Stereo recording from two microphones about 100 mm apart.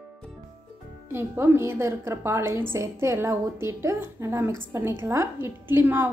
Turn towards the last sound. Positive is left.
turn(degrees=-20)  # may be behind; listen again after turning